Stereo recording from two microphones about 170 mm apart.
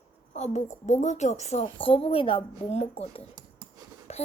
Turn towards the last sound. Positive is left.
turn(degrees=40)  # may be behind; listen again after turning